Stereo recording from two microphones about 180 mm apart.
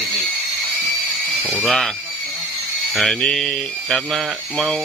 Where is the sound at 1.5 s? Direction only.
5° left (ahead or behind).